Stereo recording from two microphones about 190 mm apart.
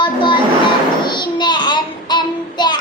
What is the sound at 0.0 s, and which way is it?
Train, 25° left (ahead or behind).